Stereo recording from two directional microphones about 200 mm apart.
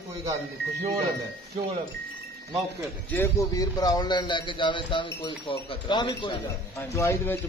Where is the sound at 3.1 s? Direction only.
15° left (ahead or behind).